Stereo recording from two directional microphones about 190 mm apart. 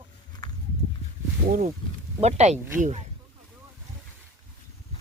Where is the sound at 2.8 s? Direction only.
35° right (ahead or behind).